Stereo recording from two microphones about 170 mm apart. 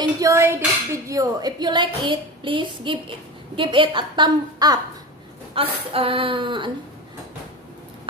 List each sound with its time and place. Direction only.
0.0 s a woman's voice: 20° right (ahead or behind)